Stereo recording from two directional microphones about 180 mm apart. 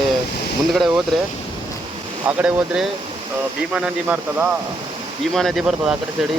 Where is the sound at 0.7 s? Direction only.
Centre (ahead or behind).